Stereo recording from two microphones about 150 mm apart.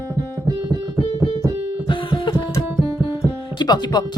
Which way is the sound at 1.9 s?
30° left (ahead or behind).